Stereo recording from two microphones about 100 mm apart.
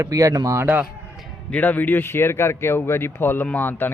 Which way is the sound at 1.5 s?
15° left (ahead or behind).